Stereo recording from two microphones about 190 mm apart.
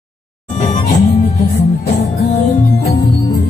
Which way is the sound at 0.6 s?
35° left (ahead or behind).